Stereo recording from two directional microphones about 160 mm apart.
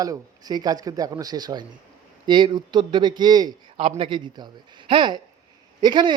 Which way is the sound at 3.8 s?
35° right (ahead or behind).